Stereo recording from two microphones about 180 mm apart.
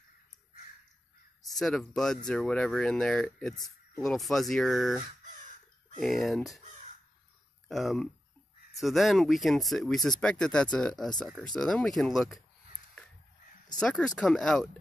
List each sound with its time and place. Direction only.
1.4 s speech: centre (ahead or behind)
5.2 s crow: 45° right (ahead or behind)
5.9 s speech: centre (ahead or behind)
7.6 s speech: centre (ahead or behind)
13.7 s speech: 5° left (ahead or behind)